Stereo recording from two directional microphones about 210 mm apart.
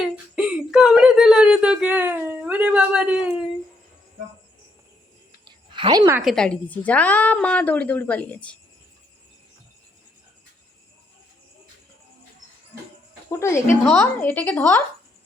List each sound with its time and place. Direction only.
0.3 s whimper: 5° right (ahead or behind)
5.5 s a sound: 25° right (ahead or behind)
6.2 s a woman's voice: 5° left (ahead or behind)
13.3 s a woman's voice: 15° left (ahead or behind)